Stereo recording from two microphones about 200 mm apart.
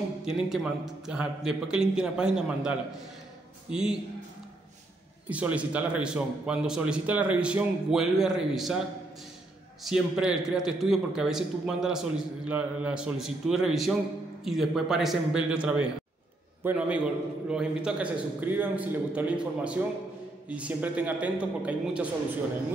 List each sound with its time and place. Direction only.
0.2 s a man's voice: centre (ahead or behind)
3.7 s a man's voice: 5° right (ahead or behind)
5.3 s a man's voice: 5° right (ahead or behind)
9.8 s a man's voice: 5° right (ahead or behind)